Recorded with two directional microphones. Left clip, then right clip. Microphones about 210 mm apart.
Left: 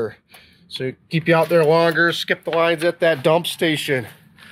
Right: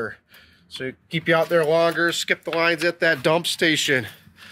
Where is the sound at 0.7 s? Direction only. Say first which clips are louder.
Left 3 dB; 15° left (ahead or behind).